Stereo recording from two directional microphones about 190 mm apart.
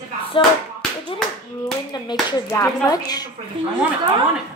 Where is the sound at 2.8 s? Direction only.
20° left (ahead or behind).